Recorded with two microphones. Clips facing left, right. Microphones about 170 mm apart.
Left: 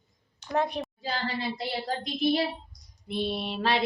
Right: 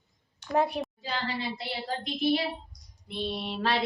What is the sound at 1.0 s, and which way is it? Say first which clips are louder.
Speech: left 5 dB; 40° left (ahead or behind).